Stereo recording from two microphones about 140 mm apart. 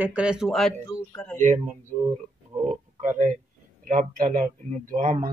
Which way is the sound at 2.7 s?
60° right (ahead or behind).